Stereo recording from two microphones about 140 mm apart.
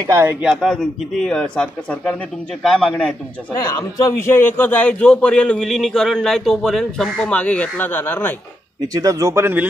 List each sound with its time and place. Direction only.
0.0 s speech: 20° right (ahead or behind)
0.4 s a man's voice: 5° right (ahead or behind)
3.7 s a man's voice: 20° left (ahead or behind)
8.8 s speech: 25° right (ahead or behind)